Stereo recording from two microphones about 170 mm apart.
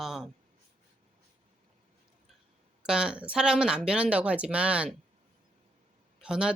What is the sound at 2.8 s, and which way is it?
Speech, 5° right (ahead or behind).